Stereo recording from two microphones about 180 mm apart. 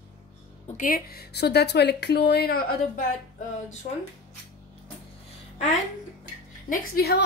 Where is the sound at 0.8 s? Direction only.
50° left (ahead or behind).